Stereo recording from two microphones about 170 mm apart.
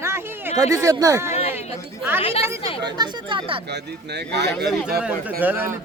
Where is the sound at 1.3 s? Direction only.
35° left (ahead or behind).